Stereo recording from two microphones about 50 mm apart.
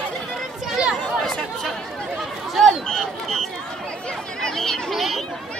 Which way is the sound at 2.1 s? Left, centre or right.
Centre.